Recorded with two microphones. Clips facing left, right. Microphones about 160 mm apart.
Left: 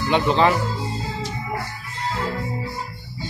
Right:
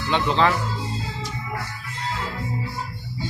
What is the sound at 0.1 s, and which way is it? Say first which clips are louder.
Speech: left 2 dB; 15° left (ahead or behind).